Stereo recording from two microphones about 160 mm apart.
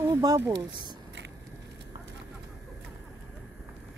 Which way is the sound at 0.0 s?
20° right (ahead or behind).